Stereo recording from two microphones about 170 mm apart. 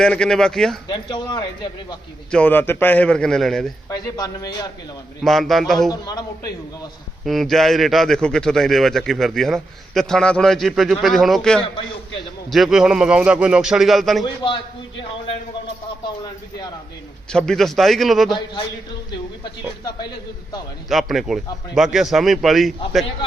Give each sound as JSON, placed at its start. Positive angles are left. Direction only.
{"t": 0.0, "sound": "a man's voice", "side_deg": 5}
{"t": 0.9, "sound": "speech", "side_deg": 25}
{"t": 2.3, "sound": "a man's voice", "side_deg": 10}
{"t": 3.8, "sound": "speech", "side_deg": 20}
{"t": 5.2, "sound": "a man's voice", "side_deg": 0}
{"t": 5.9, "sound": "speech", "side_deg": 20}
{"t": 7.3, "sound": "a man's voice", "side_deg": 0}
{"t": 16.0, "sound": "speech", "side_deg": 25}
{"t": 17.3, "sound": "a man's voice", "side_deg": 5}
{"t": 19.8, "sound": "speech", "side_deg": 25}
{"t": 20.9, "sound": "a man's voice", "side_deg": 0}